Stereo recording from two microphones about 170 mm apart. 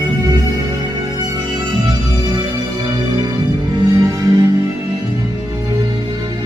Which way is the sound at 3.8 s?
25° right (ahead or behind).